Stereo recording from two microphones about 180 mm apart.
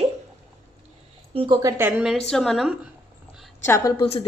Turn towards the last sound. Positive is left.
turn(degrees=35)  # may be behind; listen again after turning